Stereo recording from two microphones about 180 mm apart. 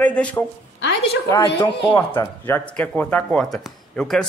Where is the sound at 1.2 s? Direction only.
20° left (ahead or behind).